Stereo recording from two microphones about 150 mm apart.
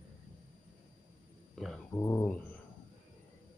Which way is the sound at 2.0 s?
20° left (ahead or behind).